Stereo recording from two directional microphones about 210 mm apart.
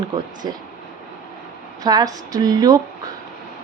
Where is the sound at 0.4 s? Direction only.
20° right (ahead or behind).